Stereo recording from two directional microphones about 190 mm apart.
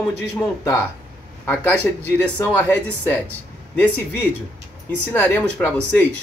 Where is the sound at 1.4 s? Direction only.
10° left (ahead or behind).